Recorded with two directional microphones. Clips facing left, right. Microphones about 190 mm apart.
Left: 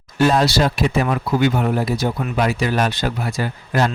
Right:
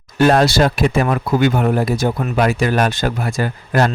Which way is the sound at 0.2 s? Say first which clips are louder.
Right 3 dB; 55° right (ahead or behind).